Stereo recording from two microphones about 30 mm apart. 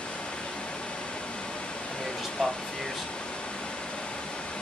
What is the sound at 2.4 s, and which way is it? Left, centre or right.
Speech, left.